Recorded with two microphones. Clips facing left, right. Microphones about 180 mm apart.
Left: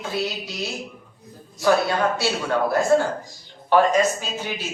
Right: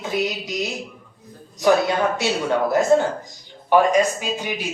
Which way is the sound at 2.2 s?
20° right (ahead or behind).